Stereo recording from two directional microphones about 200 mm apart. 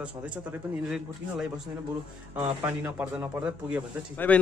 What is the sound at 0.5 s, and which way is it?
Speech, 5° right (ahead or behind).